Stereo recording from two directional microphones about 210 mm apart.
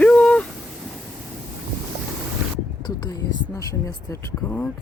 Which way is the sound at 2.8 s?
20° left (ahead or behind).